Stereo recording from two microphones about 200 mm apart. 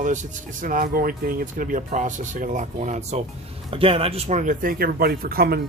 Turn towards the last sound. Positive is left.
turn(degrees=-50)  # may be behind; listen again after turning